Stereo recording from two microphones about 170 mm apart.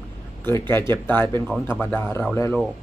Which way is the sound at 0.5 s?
15° left (ahead or behind).